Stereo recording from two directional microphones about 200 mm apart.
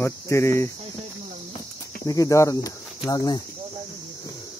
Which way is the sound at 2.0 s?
15° left (ahead or behind).